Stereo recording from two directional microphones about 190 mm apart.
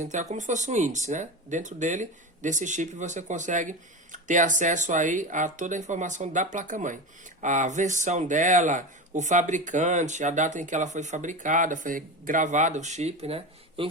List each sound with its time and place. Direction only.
0.0 s speech: 40° right (ahead or behind)